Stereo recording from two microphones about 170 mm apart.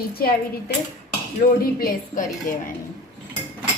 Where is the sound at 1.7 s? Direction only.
55° left (ahead or behind).